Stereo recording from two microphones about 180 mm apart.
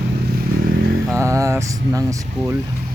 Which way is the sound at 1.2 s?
15° right (ahead or behind).